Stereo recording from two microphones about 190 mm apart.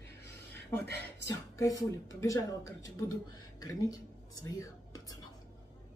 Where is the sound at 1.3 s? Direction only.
15° left (ahead or behind).